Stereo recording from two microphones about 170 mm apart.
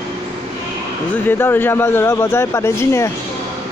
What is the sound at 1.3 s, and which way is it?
A man's voice, 10° left (ahead or behind).